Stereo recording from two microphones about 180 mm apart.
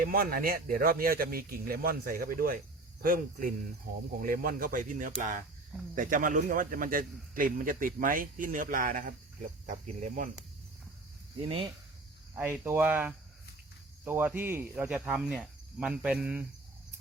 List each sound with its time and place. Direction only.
0.0 s a man's voice: 55° right (ahead or behind)
11.4 s speech: 30° right (ahead or behind)
12.3 s speech: 15° right (ahead or behind)